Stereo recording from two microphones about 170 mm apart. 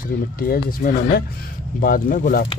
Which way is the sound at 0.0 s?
60° left (ahead or behind).